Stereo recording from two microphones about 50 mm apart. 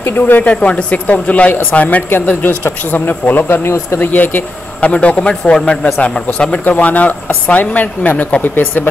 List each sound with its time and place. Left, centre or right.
0.2 s speech: left
0.5 s speech: left
2.0 s speech: left
4.8 s speech: left
6.7 s speech: left